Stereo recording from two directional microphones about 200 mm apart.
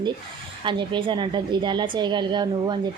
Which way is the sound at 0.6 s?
25° right (ahead or behind).